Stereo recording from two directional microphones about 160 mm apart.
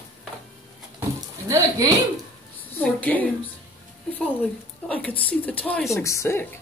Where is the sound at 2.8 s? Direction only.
10° left (ahead or behind).